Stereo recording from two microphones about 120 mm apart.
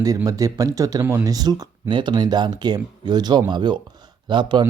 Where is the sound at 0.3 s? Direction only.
30° right (ahead or behind).